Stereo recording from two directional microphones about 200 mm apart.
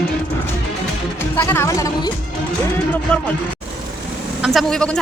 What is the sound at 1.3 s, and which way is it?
Speech, 10° left (ahead or behind).